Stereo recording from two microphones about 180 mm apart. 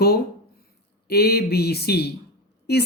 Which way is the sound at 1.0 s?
60° left (ahead or behind).